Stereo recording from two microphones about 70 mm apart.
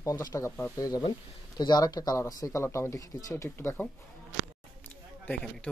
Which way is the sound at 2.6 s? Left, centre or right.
Left.